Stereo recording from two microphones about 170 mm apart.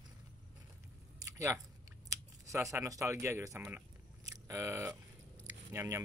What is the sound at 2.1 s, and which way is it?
Speech, 20° right (ahead or behind).